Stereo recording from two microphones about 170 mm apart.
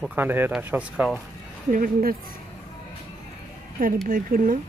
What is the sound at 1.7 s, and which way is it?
Speech, 60° right (ahead or behind).